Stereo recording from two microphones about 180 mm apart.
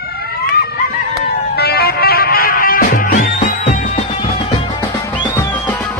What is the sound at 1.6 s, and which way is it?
Music, 60° left (ahead or behind).